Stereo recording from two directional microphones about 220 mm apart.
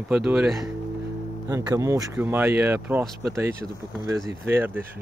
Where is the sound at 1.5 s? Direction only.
15° right (ahead or behind).